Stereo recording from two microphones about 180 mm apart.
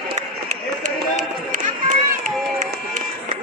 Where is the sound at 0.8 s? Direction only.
45° right (ahead or behind).